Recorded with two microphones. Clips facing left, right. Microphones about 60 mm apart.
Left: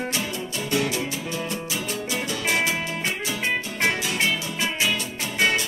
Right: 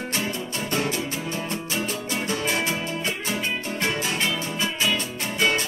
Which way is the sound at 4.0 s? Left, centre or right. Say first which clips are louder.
Left 1 dB; right.